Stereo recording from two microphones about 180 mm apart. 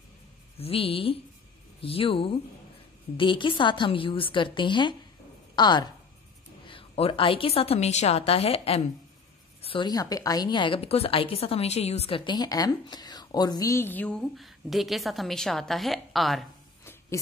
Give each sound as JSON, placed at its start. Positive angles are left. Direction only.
{"t": 0.6, "sound": "a woman's voice", "side_deg": 30}